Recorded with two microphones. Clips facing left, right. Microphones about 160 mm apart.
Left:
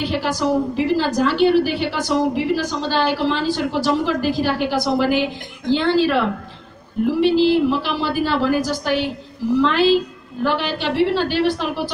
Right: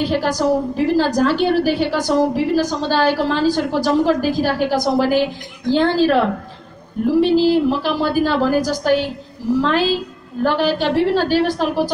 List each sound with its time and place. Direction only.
0.0 s a woman's voice: 45° right (ahead or behind)